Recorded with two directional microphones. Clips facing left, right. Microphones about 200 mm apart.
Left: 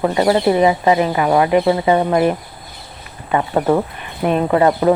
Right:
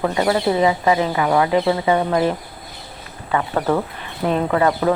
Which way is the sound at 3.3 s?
25° left (ahead or behind).